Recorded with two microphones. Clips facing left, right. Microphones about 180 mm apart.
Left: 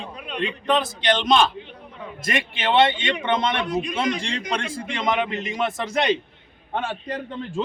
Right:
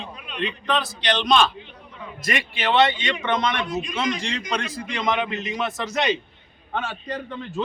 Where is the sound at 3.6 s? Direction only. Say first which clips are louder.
Left 3 dB; 60° left (ahead or behind).